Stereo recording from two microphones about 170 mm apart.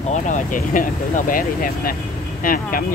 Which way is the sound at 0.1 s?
50° left (ahead or behind).